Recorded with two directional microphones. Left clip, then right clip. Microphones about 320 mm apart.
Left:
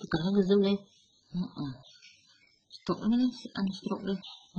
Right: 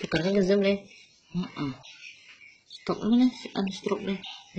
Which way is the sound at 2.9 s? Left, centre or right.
Left.